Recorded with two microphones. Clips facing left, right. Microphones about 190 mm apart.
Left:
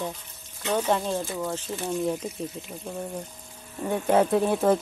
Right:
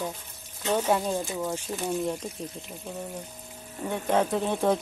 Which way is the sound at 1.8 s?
Centre (ahead or behind).